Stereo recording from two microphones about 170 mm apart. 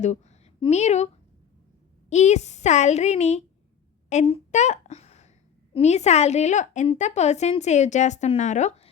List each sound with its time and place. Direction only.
0.0 s a woman's voice: 40° left (ahead or behind)